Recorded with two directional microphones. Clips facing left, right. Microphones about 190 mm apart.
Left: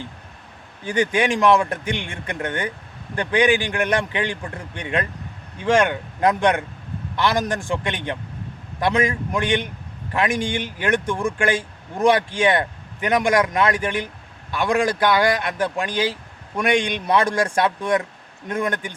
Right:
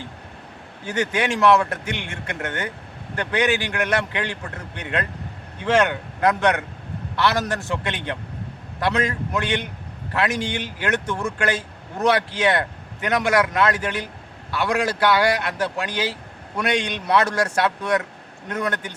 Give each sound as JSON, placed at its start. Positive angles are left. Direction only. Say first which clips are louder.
{"t": 0.9, "sound": "speech", "louder": "left 3 dB", "side_deg": 15}